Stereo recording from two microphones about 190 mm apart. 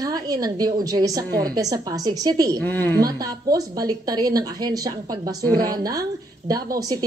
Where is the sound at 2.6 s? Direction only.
10° left (ahead or behind).